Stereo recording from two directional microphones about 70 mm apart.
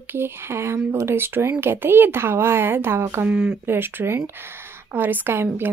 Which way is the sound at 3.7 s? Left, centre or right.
Right.